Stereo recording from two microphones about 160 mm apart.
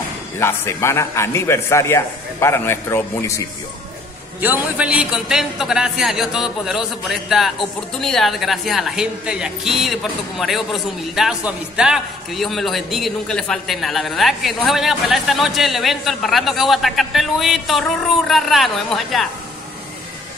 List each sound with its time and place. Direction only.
0.4 s a man's voice: 15° left (ahead or behind)
4.4 s a man's voice: 10° right (ahead or behind)